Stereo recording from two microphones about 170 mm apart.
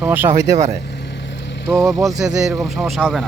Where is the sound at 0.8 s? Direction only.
80° left.